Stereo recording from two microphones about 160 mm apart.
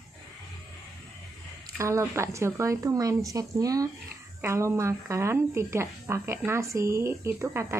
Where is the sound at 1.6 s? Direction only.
20° right (ahead or behind).